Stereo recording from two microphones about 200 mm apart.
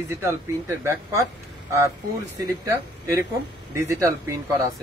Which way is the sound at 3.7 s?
15° right (ahead or behind).